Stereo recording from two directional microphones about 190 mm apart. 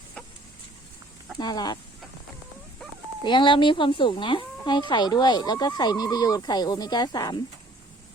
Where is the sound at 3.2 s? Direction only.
25° left (ahead or behind).